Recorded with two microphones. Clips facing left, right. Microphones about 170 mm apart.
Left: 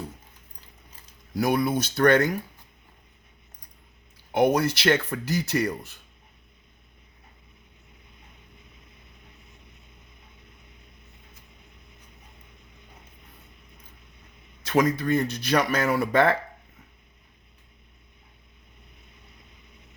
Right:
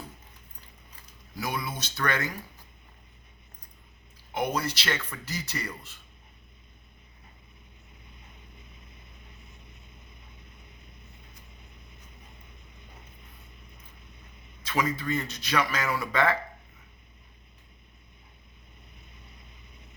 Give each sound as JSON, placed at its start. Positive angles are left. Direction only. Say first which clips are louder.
{"t": 1.4, "sound": "speech", "louder": "left 11 dB", "side_deg": 55}
{"t": 4.3, "sound": "speech", "louder": "left 8 dB", "side_deg": 60}
{"t": 14.7, "sound": "speech", "louder": "left 7 dB", "side_deg": 45}